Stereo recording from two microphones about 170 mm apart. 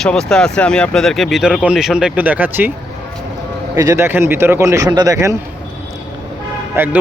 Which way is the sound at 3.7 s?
20° right (ahead or behind).